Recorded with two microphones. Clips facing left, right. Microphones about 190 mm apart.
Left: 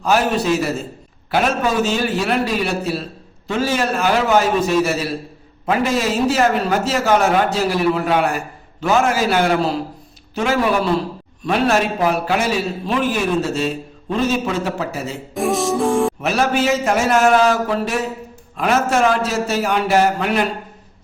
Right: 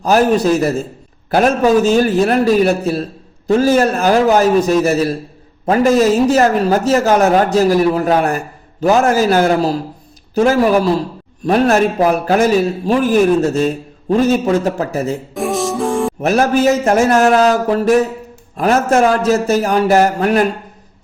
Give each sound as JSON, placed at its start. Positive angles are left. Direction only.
{"t": 0.0, "sound": "a man's voice", "side_deg": -40}
{"t": 15.4, "sound": "music", "side_deg": 0}
{"t": 16.2, "sound": "a man's voice", "side_deg": -45}